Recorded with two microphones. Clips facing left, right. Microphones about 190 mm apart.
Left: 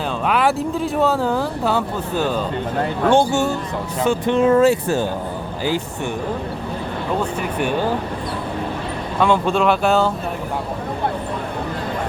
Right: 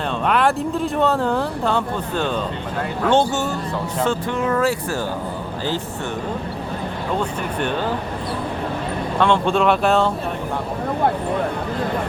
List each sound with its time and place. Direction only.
0.3 s speech: 5° left (ahead or behind)
4.3 s speech: 25° left (ahead or behind)
7.2 s speech: 10° left (ahead or behind)
9.2 s speech: 5° left (ahead or behind)